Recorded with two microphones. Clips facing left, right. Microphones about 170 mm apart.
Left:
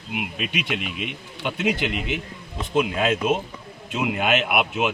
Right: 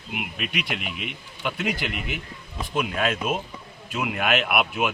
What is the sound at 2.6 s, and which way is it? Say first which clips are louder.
Speech: left 4 dB; 20° left (ahead or behind).